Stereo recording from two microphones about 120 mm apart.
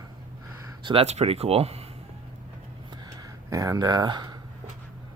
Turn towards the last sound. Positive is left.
turn(degrees=-35)  # may be behind; listen again after turning